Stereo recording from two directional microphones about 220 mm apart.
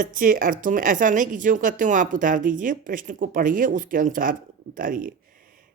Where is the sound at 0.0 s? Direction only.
40° right (ahead or behind).